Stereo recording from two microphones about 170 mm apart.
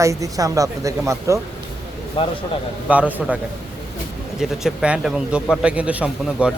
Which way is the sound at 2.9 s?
10° right (ahead or behind).